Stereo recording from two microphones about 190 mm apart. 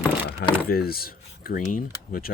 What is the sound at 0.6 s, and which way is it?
Speech, 50° left (ahead or behind).